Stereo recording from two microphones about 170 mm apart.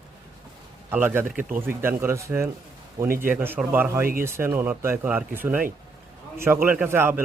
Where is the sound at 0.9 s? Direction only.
10° right (ahead or behind).